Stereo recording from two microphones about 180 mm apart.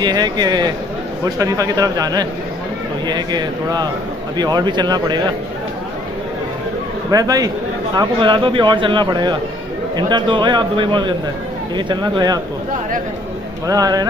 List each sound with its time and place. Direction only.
0.0 s speech: 20° right (ahead or behind)
7.1 s speech: 20° right (ahead or behind)
13.7 s speech: 20° right (ahead or behind)